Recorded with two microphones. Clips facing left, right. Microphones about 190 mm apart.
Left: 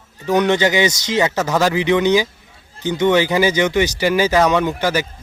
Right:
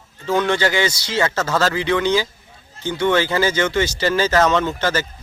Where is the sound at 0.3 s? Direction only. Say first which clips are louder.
Left 3 dB; 20° left (ahead or behind).